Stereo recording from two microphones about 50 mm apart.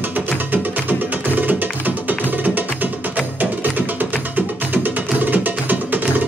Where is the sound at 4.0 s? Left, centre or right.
Right.